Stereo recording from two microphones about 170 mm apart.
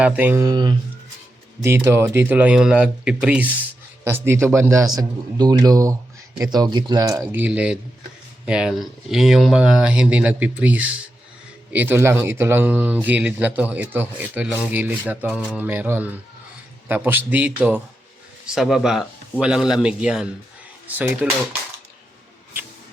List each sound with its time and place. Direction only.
0.0 s speech: 10° right (ahead or behind)
0.4 s a man's voice: 25° right (ahead or behind)
1.6 s a man's voice: 15° right (ahead or behind)
15.3 s a sound: 10° left (ahead or behind)
15.5 s speech: 10° right (ahead or behind)